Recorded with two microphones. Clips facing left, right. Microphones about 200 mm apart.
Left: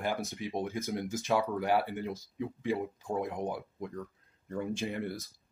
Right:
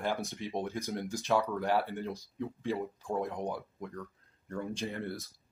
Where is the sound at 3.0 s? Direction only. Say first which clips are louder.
Even; 15° left (ahead or behind).